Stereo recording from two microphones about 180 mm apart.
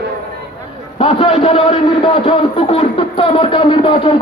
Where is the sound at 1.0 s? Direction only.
30° left (ahead or behind).